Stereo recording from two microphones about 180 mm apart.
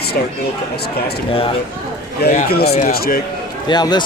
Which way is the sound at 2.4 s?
60° left (ahead or behind).